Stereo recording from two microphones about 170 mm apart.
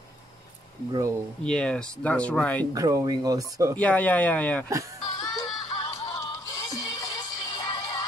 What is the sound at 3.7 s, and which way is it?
Speech, 10° left (ahead or behind).